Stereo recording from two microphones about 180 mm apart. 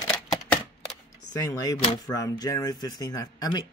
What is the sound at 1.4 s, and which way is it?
Speech, 20° left (ahead or behind).